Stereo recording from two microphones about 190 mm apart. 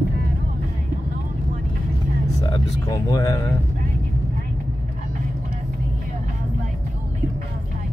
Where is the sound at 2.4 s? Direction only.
20° left (ahead or behind).